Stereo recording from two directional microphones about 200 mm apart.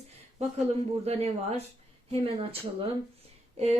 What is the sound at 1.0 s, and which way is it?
Speech, 30° right (ahead or behind).